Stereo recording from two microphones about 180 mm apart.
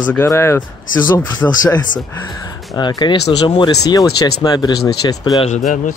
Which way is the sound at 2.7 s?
25° left (ahead or behind).